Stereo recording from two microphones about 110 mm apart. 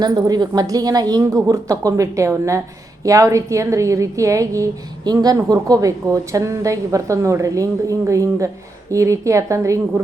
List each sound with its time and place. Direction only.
0.0 s a woman's voice: 40° right (ahead or behind)